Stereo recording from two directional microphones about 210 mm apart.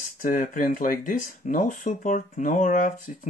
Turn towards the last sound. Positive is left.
turn(degrees=35)  # may be behind; listen again after turning